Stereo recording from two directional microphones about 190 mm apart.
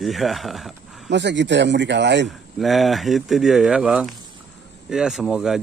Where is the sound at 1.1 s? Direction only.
65° right (ahead or behind).